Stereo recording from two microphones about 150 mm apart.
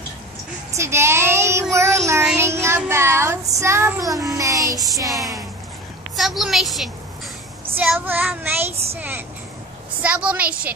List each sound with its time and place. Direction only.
0.7 s child singing: 15° right (ahead or behind)
6.1 s a woman's voice: centre (ahead or behind)
7.7 s child singing: 10° right (ahead or behind)